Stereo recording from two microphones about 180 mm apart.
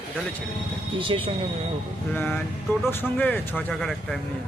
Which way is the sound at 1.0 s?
30° right (ahead or behind).